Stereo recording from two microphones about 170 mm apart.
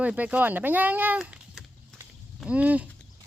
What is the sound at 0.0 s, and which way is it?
Speech, 10° right (ahead or behind).